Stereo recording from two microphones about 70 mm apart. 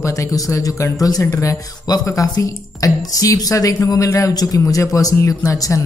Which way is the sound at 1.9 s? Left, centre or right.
Left.